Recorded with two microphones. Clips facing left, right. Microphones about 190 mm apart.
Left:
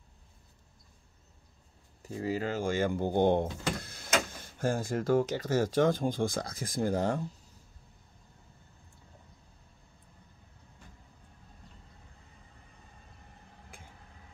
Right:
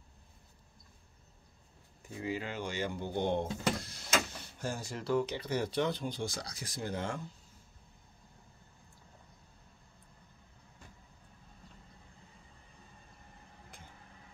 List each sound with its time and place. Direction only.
2.0 s speech: 40° left (ahead or behind)